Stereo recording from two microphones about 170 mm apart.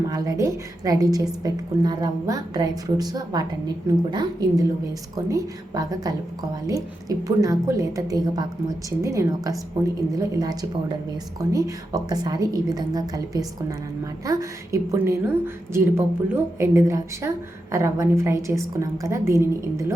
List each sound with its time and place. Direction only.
0.1 s a woman's voice: 20° right (ahead or behind)